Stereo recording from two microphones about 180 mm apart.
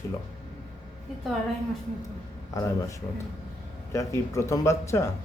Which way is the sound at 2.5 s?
20° left (ahead or behind).